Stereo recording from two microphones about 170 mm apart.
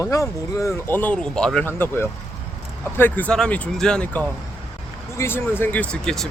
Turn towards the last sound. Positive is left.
turn(degrees=5)  # may be behind; listen again after turning